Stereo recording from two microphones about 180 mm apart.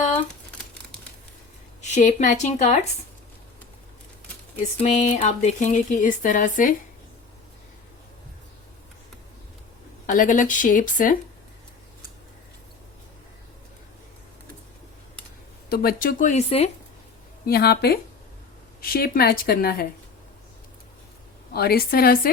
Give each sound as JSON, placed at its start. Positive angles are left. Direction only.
{"t": 1.8, "sound": "a woman's voice", "side_deg": 40}
{"t": 4.8, "sound": "speech", "side_deg": 40}
{"t": 10.1, "sound": "speech", "side_deg": 45}
{"t": 15.7, "sound": "speech", "side_deg": 55}
{"t": 17.4, "sound": "speech", "side_deg": 60}
{"t": 21.5, "sound": "speech", "side_deg": 60}